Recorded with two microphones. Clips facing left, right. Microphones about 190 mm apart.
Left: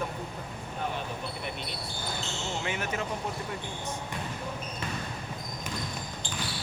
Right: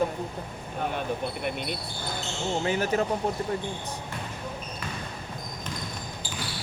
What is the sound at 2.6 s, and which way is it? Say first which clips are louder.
Speech: right 9 dB; 35° right (ahead or behind).